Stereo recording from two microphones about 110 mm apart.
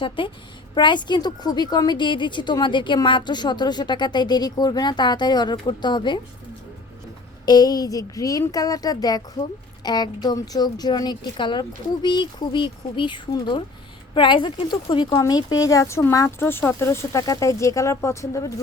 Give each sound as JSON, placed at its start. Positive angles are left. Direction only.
{"t": 0.2, "sound": "a woman's voice", "side_deg": 50}
{"t": 7.4, "sound": "a woman's voice", "side_deg": 35}